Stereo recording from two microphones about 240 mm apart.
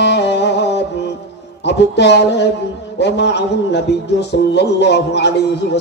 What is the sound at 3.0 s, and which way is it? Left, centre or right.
Music, left.